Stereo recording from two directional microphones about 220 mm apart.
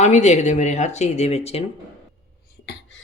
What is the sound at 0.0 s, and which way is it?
Speech, 30° left (ahead or behind).